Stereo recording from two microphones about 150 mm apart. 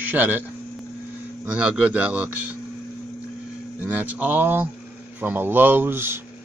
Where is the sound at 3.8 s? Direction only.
10° right (ahead or behind).